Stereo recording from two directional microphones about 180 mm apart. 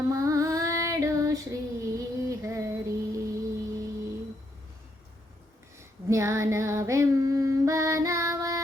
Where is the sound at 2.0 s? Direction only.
15° right (ahead or behind).